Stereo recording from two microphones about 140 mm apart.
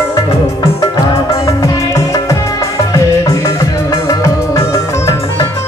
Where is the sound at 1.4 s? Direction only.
20° left (ahead or behind).